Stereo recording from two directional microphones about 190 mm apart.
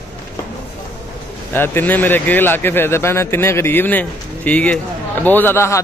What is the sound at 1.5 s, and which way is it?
A man's voice, 10° left (ahead or behind).